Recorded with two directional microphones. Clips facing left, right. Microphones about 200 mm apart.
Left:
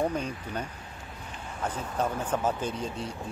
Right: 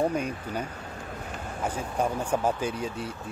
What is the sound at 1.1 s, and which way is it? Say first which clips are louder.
Vehicle: right 6 dB; 50° right (ahead or behind).